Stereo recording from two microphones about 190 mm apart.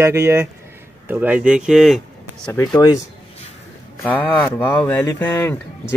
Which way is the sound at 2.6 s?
20° left (ahead or behind).